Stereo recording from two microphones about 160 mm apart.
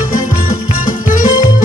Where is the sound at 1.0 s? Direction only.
55° left (ahead or behind).